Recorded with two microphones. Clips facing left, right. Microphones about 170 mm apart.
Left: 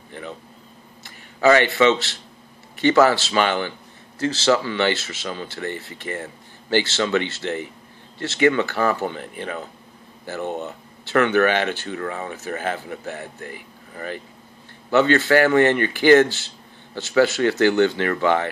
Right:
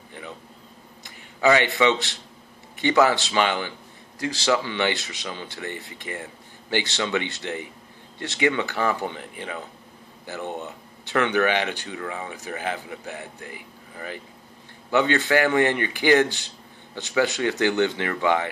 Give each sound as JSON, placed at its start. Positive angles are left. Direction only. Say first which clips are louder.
{"t": 1.0, "sound": "a man's voice", "louder": "left 3 dB", "side_deg": -15}
{"t": 11.1, "sound": "speech", "louder": "left 4 dB", "side_deg": -15}